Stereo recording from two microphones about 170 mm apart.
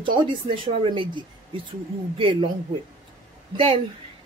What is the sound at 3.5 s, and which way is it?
Speech, 30° right (ahead or behind).